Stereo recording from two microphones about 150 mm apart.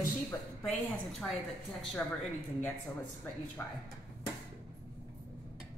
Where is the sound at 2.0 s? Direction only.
5° left (ahead or behind).